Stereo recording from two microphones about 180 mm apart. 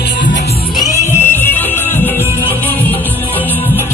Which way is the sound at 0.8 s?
10° left (ahead or behind).